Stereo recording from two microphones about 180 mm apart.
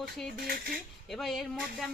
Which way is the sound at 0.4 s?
55° right (ahead or behind).